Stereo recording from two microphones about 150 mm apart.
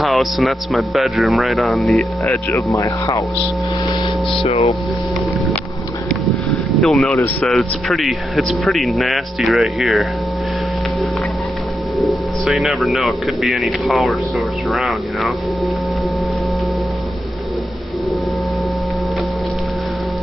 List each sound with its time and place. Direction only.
0.0 s speech: centre (ahead or behind)
2.5 s speech: 20° left (ahead or behind)
4.4 s speech: 40° left (ahead or behind)
6.8 s speech: 5° left (ahead or behind)
12.0 s speech: centre (ahead or behind)